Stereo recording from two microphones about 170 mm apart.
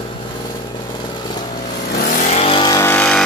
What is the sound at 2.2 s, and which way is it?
Vehicle, 35° left (ahead or behind).